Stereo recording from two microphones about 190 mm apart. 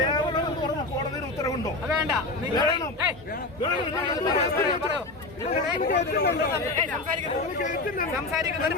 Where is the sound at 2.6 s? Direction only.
25° left (ahead or behind).